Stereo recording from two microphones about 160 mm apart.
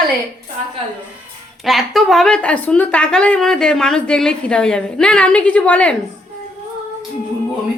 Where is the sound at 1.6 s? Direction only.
Centre (ahead or behind).